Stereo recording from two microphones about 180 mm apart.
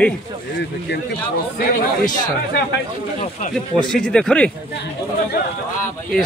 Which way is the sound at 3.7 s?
5° left (ahead or behind).